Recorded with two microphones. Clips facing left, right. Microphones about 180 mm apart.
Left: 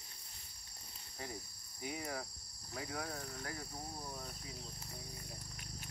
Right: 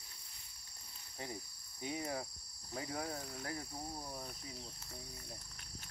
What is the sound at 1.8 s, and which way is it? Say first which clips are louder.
Speech: right 2 dB; 25° right (ahead or behind).